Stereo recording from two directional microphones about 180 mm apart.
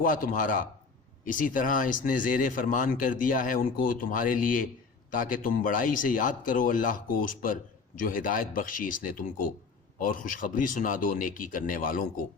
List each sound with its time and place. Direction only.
0.0 s speech: 50° left (ahead or behind)